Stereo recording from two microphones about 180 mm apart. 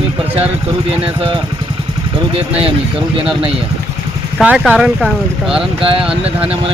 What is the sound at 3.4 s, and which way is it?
Speech, 30° right (ahead or behind).